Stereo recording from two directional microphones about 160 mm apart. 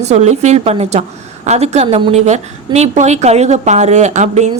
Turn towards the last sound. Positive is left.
turn(degrees=-45)  # may be behind; listen again after turning